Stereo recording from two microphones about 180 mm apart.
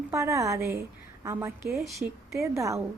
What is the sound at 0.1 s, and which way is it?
A woman's voice, 15° right (ahead or behind).